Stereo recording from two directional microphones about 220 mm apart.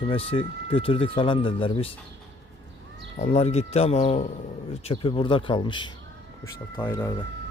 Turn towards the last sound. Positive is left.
turn(degrees=10)  # may be behind; listen again after turning